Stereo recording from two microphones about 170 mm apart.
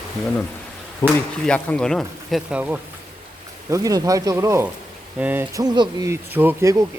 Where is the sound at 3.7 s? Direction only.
20° right (ahead or behind).